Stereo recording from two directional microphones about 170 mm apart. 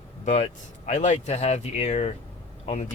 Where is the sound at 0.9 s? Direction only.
40° left (ahead or behind).